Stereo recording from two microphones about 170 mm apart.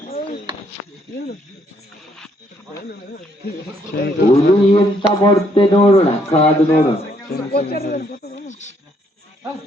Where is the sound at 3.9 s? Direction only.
65° left (ahead or behind).